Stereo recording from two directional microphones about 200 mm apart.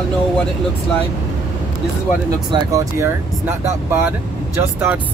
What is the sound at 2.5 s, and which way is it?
Speech, 15° right (ahead or behind).